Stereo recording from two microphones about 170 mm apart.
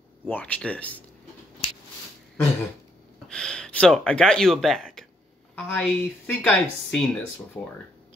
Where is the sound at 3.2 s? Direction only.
5° left (ahead or behind).